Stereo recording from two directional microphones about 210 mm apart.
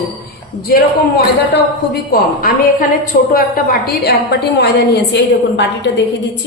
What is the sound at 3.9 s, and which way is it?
A woman's voice, 50° left (ahead or behind).